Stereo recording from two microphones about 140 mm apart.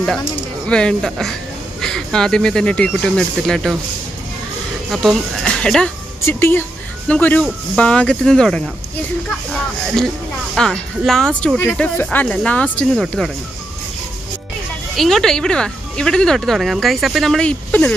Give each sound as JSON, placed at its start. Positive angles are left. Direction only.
{"t": 0.7, "sound": "speech", "side_deg": 5}
{"t": 4.9, "sound": "speech", "side_deg": 0}
{"t": 6.2, "sound": "speech", "side_deg": 15}
{"t": 15.0, "sound": "speech", "side_deg": 0}